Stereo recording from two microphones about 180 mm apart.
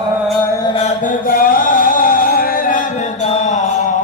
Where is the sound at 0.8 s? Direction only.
50° left (ahead or behind).